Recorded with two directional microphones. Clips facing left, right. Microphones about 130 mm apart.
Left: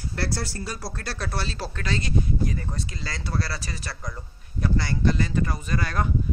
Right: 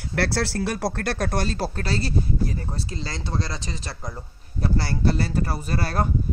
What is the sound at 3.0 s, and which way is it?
Speech, 25° right (ahead or behind).